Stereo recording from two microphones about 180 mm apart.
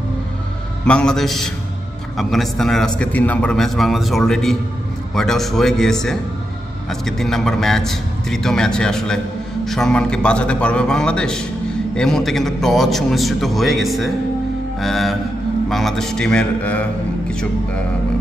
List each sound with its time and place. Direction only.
0.8 s a man's voice: 5° left (ahead or behind)